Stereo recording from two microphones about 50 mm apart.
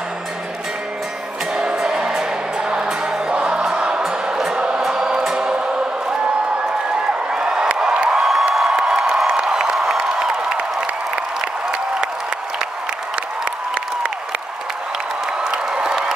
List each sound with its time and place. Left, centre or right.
1.6 s music: centre
4.0 s music: centre
8.2 s music: centre
8.5 s crowd: centre
15.5 s a sound: centre